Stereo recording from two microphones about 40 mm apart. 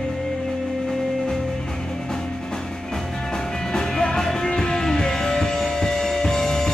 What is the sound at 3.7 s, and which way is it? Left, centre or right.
Music, centre.